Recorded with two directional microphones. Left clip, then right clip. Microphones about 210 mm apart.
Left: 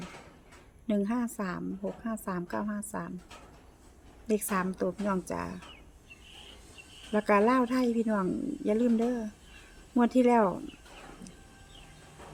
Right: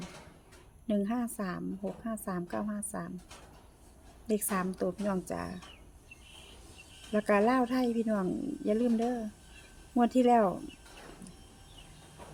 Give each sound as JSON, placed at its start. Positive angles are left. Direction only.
{"t": 0.9, "sound": "speech", "side_deg": 5}
{"t": 4.3, "sound": "speech", "side_deg": 5}
{"t": 7.1, "sound": "speech", "side_deg": 5}